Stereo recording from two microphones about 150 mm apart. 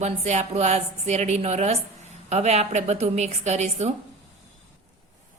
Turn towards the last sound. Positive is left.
turn(degrees=-45)  # may be behind; listen again after turning